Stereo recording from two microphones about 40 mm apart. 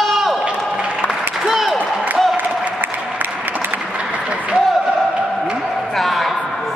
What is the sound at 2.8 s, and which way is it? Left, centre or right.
Applause, right.